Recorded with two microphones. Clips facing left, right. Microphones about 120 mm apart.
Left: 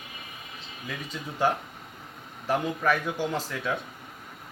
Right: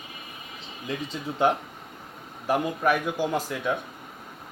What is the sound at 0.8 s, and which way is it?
Speech, 25° right (ahead or behind).